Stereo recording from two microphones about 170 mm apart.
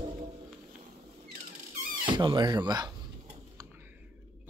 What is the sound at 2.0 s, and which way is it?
Speech, 25° right (ahead or behind).